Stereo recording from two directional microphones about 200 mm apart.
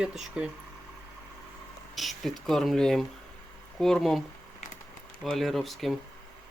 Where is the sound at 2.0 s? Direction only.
Centre (ahead or behind).